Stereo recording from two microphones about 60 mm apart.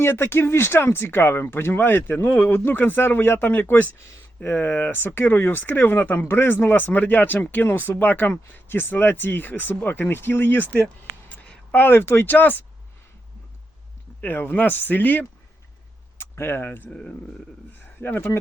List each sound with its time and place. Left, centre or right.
0.0 s speech: left
11.3 s a sound: left
11.7 s speech: left
14.2 s speech: left
16.1 s speech: left
16.9 s speech: centre
18.0 s speech: left